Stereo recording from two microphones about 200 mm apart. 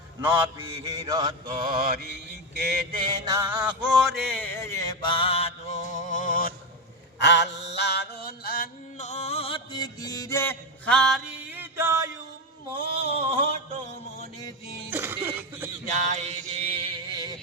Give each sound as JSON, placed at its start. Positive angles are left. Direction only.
{"t": 0.2, "sound": "mantra", "side_deg": -10}
{"t": 1.6, "sound": "mantra", "side_deg": -50}
{"t": 3.0, "sound": "a sound", "side_deg": -20}
{"t": 7.2, "sound": "mantra", "side_deg": 60}
{"t": 12.7, "sound": "a sound", "side_deg": -30}
{"t": 14.8, "sound": "mantra", "side_deg": -10}
{"t": 16.0, "sound": "music", "side_deg": -35}